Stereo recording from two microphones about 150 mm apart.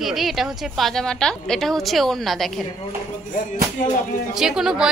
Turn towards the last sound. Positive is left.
turn(degrees=-5)  # may be behind; listen again after turning